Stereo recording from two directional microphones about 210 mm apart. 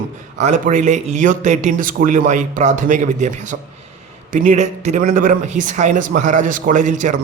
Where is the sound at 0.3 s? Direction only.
35° right (ahead or behind).